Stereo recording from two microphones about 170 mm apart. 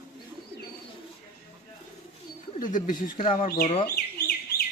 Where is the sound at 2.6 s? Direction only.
50° left (ahead or behind).